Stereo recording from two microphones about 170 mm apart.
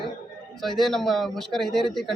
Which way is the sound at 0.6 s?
Centre (ahead or behind).